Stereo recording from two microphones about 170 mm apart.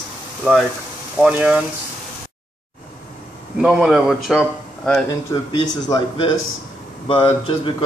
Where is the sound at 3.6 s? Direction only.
5° right (ahead or behind).